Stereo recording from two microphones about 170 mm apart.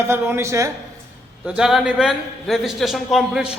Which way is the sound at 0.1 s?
15° right (ahead or behind).